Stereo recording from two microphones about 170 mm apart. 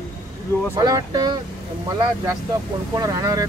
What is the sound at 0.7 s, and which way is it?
Speech, 20° right (ahead or behind).